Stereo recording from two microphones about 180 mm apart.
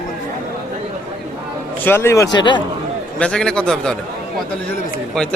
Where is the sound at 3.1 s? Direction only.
5° left (ahead or behind).